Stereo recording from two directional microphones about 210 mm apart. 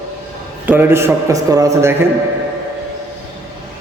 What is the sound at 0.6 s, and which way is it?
A man's voice, 10° right (ahead or behind).